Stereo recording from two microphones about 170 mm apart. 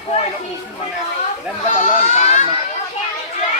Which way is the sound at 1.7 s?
45° left (ahead or behind).